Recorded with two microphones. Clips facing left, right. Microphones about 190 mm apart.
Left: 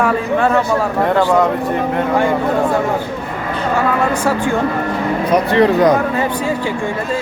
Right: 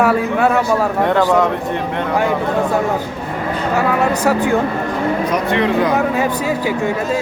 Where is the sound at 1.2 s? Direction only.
10° left (ahead or behind).